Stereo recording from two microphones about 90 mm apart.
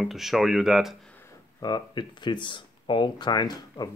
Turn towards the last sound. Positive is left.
turn(degrees=50)  # may be behind; listen again after turning